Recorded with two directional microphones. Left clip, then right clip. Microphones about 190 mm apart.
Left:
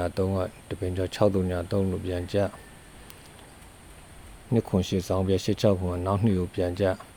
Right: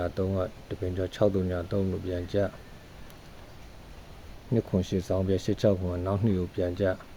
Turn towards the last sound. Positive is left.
turn(degrees=30)  # may be behind; listen again after turning